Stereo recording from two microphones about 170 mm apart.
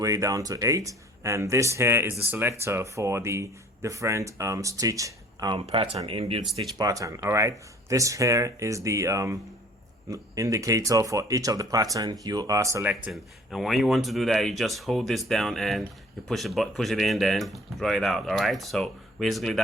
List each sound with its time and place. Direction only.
0.0 s speech: 20° right (ahead or behind)
6.7 s speech: 20° right (ahead or behind); by 19.6 s centre (ahead or behind)